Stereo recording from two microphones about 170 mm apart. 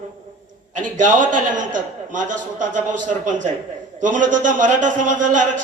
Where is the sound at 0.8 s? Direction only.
50° right (ahead or behind).